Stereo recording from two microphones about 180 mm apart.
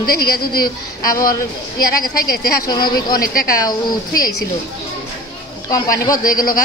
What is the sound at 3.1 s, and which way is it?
Speech, 55° left (ahead or behind).